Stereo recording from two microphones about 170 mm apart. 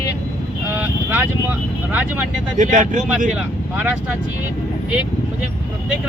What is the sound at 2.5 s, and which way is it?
Speech, 50° right (ahead or behind).